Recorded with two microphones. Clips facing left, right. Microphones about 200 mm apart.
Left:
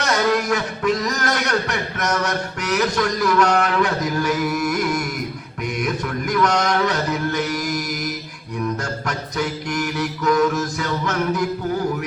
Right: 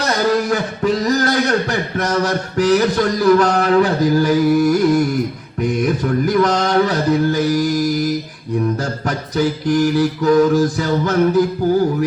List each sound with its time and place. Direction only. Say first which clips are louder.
0.0 s speech: right 3 dB; 35° right (ahead or behind)
5.6 s a sound: right 7 dB; 35° right (ahead or behind)
9.0 s speech: right 8 dB; 35° right (ahead or behind)